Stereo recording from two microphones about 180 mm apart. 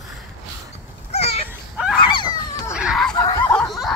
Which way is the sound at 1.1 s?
35° left (ahead or behind).